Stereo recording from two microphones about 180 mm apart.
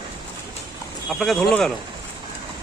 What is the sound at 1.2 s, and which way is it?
Speech, centre (ahead or behind).